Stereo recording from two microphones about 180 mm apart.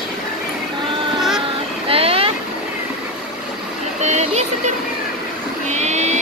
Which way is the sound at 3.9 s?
40° right (ahead or behind).